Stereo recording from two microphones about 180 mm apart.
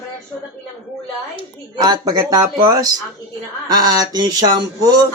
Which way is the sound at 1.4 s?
25° right (ahead or behind).